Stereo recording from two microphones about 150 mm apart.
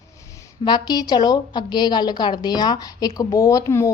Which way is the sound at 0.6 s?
30° left (ahead or behind).